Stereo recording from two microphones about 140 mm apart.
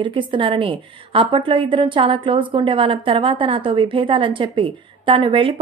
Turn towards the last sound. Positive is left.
turn(degrees=-40)  # may be behind; listen again after turning